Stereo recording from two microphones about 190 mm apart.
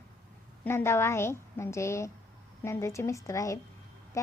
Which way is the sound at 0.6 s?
15° left (ahead or behind).